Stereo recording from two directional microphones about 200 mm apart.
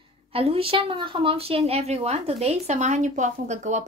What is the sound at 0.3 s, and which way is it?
A woman's voice, 30° right (ahead or behind).